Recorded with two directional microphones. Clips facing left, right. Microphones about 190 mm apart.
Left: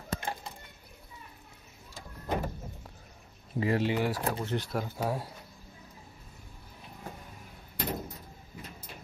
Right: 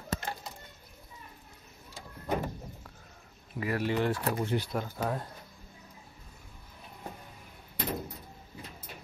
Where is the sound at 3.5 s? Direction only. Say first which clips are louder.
Left 3 dB; 25° left (ahead or behind).